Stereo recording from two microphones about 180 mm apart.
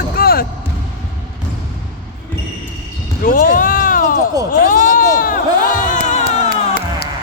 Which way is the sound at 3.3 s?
50° left (ahead or behind).